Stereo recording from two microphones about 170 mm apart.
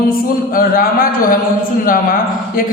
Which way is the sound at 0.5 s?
60° left (ahead or behind).